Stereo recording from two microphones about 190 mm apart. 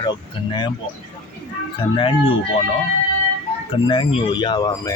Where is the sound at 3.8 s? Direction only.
25° left (ahead or behind).